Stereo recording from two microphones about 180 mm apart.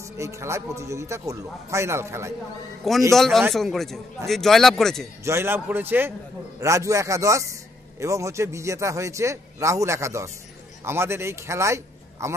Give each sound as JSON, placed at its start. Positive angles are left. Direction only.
{"t": 0.0, "sound": "a man's voice", "side_deg": -15}
{"t": 2.8, "sound": "speech", "side_deg": 0}
{"t": 5.2, "sound": "a man's voice", "side_deg": -15}